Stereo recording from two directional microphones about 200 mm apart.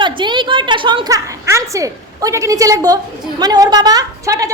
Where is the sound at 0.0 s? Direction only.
25° right (ahead or behind).